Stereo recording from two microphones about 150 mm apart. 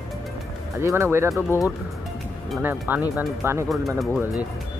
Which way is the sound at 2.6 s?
15° right (ahead or behind).